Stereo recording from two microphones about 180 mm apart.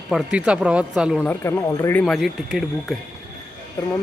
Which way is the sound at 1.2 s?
10° left (ahead or behind).